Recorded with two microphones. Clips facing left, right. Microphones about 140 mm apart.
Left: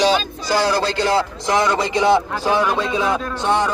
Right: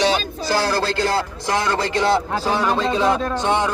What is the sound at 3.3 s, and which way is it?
Speech, 15° right (ahead or behind).